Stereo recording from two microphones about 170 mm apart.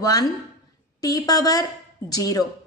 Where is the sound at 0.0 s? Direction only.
20° left (ahead or behind).